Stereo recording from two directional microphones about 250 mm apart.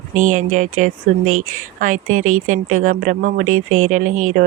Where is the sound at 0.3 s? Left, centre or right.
Right.